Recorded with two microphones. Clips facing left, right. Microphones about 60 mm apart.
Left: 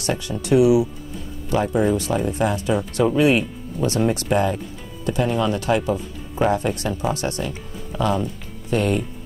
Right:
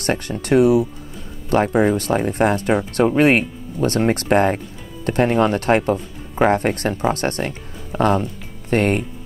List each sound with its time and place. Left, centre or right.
0.0 s speech: right